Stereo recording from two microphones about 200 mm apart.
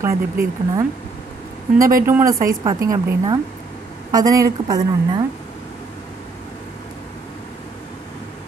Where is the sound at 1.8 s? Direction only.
45° right (ahead or behind).